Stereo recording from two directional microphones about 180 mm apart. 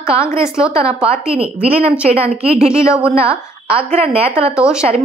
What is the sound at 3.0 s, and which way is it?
A woman's voice, 30° right (ahead or behind).